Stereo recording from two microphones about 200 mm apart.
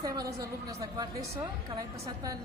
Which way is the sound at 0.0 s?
20° right (ahead or behind).